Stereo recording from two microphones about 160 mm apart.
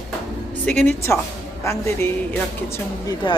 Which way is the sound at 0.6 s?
5° left (ahead or behind).